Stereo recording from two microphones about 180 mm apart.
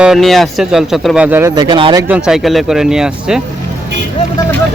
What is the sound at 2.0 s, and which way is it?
Speech, 5° right (ahead or behind).